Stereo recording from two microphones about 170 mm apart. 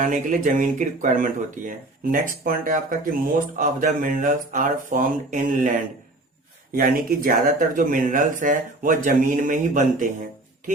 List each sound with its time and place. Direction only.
0.0 s speech: 50° right (ahead or behind)